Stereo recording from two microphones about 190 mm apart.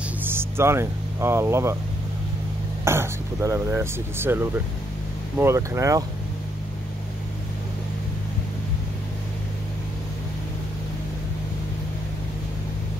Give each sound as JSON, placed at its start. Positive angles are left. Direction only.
{"t": 0.2, "sound": "speech", "side_deg": -10}
{"t": 2.8, "sound": "speech", "side_deg": -15}